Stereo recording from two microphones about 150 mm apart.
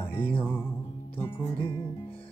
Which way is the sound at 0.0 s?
15° left (ahead or behind).